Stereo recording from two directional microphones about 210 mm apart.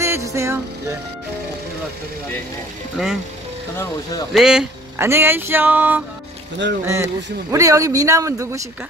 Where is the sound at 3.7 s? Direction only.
15° left (ahead or behind).